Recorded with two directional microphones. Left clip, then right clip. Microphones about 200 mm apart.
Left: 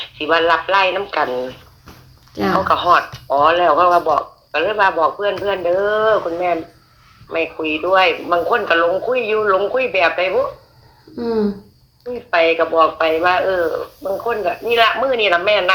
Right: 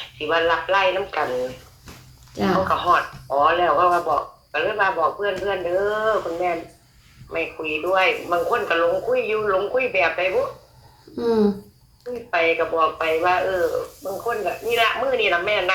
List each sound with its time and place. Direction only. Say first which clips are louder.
0.2 s speech: left 5 dB; 40° left (ahead or behind)
2.6 s speech: left 8 dB; 40° left (ahead or behind)
11.2 s speech: even; 5° right (ahead or behind)
12.3 s speech: left 6 dB; 40° left (ahead or behind)